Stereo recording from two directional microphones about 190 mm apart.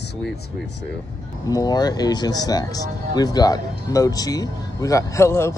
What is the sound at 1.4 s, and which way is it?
Speech, 20° left (ahead or behind).